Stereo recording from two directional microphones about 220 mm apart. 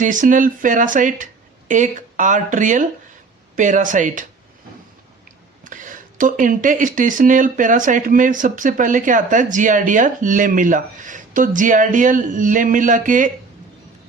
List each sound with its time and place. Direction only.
0.0 s speech: 35° right (ahead or behind)
5.6 s speech: 35° right (ahead or behind)